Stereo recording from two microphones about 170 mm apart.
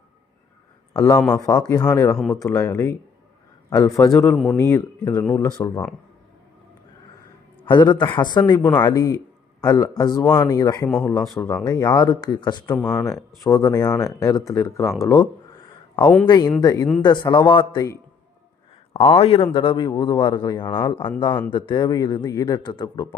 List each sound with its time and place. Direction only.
0.9 s speech: 20° left (ahead or behind)
4.3 s speech: 5° left (ahead or behind); by 5.8 s 25° left (ahead or behind)
7.7 s a man's voice: 25° left (ahead or behind)
12.7 s speech: 5° left (ahead or behind)
13.1 s speech: 20° left (ahead or behind)
18.9 s speech: 35° left (ahead or behind)